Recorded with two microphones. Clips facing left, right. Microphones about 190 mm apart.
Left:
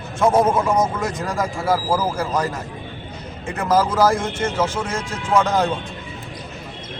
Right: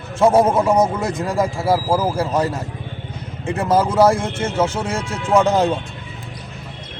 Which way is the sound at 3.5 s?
30° right (ahead or behind).